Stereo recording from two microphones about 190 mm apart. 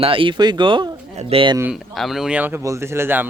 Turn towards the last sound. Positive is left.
turn(degrees=-10)  # may be behind; listen again after turning